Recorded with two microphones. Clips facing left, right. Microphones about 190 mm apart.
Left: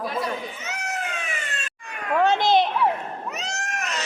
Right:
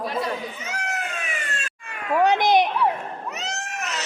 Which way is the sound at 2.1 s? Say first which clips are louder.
Right 1 dB; 15° right (ahead or behind).